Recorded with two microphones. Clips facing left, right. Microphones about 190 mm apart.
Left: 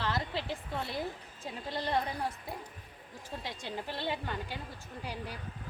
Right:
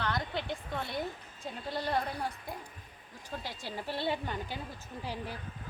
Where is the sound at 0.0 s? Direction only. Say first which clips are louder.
Even; centre (ahead or behind).